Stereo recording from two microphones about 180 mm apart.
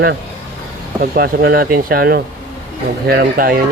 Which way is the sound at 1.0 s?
55° right (ahead or behind).